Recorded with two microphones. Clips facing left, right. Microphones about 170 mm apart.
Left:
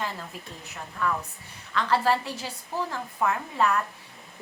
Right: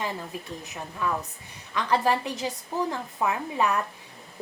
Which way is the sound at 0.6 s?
15° right (ahead or behind).